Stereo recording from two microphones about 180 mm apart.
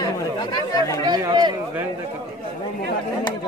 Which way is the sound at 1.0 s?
25° right (ahead or behind).